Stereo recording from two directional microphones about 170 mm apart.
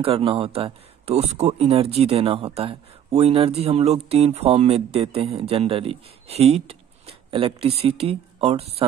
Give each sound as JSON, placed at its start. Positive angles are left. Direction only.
{"t": 0.0, "sound": "speech", "side_deg": -35}